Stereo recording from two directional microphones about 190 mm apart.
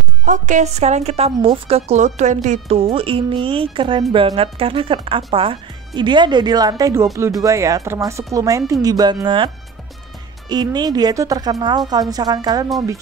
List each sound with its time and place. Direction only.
0.2 s a woman's voice: 40° right (ahead or behind); by 9.5 s 25° right (ahead or behind)
10.5 s speech: 20° right (ahead or behind)